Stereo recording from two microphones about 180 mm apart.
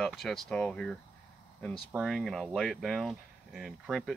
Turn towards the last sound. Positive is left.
turn(degrees=-5)  # may be behind; listen again after turning